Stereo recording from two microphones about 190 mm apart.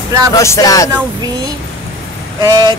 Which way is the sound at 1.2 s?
20° right (ahead or behind).